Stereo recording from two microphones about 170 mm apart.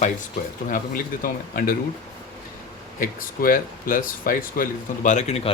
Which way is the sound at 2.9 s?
55° left (ahead or behind).